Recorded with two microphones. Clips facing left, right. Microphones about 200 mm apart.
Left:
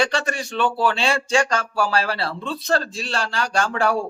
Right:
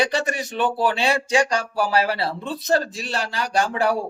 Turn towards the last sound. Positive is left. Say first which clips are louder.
# even
turn(degrees=-15)  # may be behind; listen again after turning